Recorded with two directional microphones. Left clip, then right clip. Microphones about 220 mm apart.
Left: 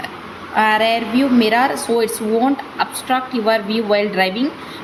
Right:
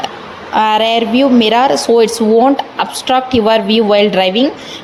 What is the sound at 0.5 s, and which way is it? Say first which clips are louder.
A woman's voice: right 4 dB; 30° right (ahead or behind).